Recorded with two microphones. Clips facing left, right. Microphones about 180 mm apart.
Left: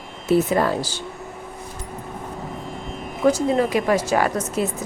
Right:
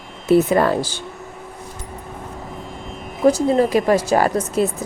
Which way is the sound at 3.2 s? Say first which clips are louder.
Right 3 dB; 35° right (ahead or behind).